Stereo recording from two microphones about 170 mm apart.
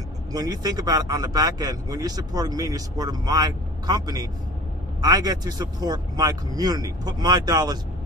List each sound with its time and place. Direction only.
0.3 s speech: 20° right (ahead or behind)